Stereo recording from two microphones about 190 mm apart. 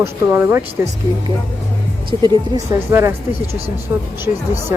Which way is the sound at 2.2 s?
15° right (ahead or behind).